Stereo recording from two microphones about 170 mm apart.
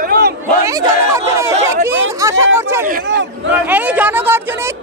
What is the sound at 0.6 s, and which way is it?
Chatter, 20° right (ahead or behind).